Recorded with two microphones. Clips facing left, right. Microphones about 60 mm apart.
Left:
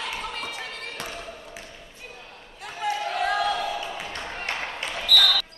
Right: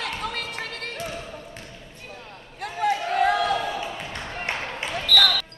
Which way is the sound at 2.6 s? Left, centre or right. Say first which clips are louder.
Right 4 dB; right.